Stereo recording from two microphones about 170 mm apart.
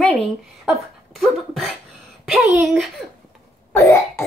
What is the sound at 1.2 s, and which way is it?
Speech, centre (ahead or behind).